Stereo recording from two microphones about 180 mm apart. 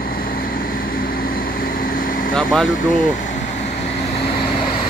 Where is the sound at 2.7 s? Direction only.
45° left (ahead or behind).